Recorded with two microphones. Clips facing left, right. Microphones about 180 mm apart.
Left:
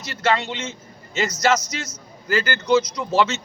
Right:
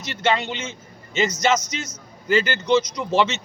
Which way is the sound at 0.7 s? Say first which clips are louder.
Even; 25° right (ahead or behind).